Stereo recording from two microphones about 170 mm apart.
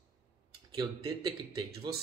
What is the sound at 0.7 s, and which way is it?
A man's voice, 20° right (ahead or behind).